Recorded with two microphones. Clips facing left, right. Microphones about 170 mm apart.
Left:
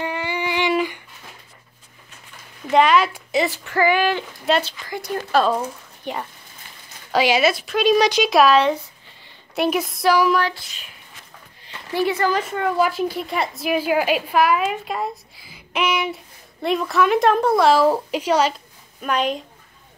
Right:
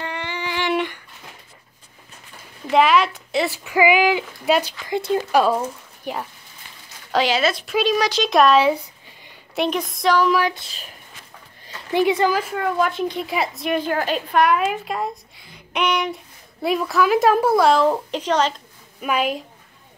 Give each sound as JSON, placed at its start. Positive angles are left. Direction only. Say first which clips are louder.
{"t": 0.0, "sound": "a sound", "louder": "left 4 dB", "side_deg": 10}
{"t": 2.7, "sound": "speech", "louder": "even", "side_deg": 0}
{"t": 4.8, "sound": "speech", "louder": "right 6 dB", "side_deg": -20}
{"t": 5.3, "sound": "speech", "louder": "left 1 dB", "side_deg": -10}
{"t": 7.1, "sound": "speech", "louder": "left 2 dB", "side_deg": 10}
{"t": 11.9, "sound": "speech", "louder": "right 2 dB", "side_deg": -20}
{"t": 18.9, "sound": "speech", "louder": "even", "side_deg": -5}